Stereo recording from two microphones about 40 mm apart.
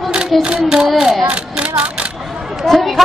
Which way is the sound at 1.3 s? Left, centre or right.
Right.